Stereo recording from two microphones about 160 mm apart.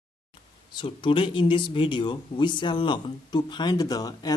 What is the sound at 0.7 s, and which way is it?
Speech, 30° left (ahead or behind).